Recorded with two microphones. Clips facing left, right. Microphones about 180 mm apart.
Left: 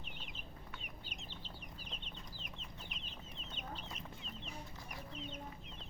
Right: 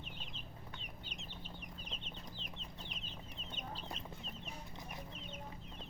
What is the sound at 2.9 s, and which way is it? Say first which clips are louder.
Chicken: right 1 dB; 35° right (ahead or behind).